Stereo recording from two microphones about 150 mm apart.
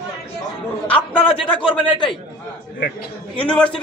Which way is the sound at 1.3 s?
35° left (ahead or behind).